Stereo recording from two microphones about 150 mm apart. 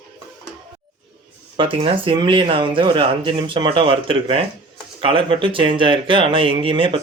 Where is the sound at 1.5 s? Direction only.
35° right (ahead or behind).